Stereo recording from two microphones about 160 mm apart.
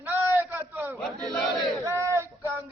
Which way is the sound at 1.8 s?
15° right (ahead or behind).